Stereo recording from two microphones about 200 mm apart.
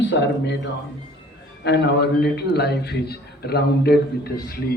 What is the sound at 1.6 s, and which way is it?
A man's voice, 60° left (ahead or behind).